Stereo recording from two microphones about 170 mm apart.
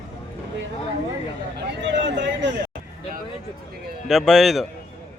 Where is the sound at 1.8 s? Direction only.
90° right.